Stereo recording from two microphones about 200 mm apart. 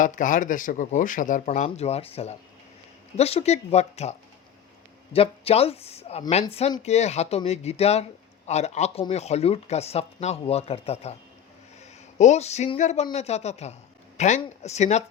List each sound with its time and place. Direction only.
0.0 s speech: 40° left (ahead or behind)
5.1 s speech: 30° left (ahead or behind)
12.1 s speech: 35° left (ahead or behind)